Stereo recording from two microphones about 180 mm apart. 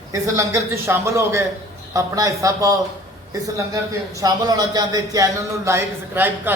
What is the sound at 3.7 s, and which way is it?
A man's voice, 20° right (ahead or behind).